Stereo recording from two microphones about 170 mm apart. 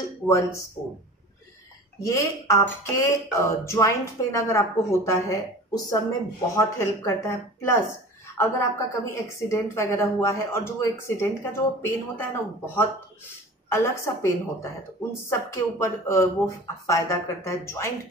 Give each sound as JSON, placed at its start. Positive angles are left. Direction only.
{"t": 0.3, "sound": "a woman's voice", "side_deg": 15}
{"t": 2.0, "sound": "a woman's voice", "side_deg": 20}